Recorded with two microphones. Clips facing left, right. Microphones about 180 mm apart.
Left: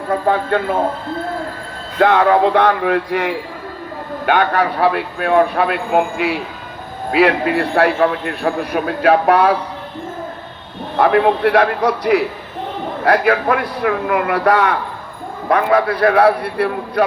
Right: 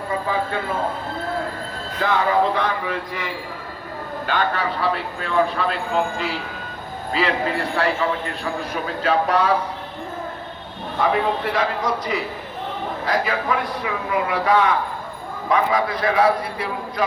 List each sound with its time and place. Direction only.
0.1 s a man's voice: 60° left (ahead or behind)
2.0 s a man's voice: 65° left (ahead or behind)
10.9 s a man's voice: 65° left (ahead or behind)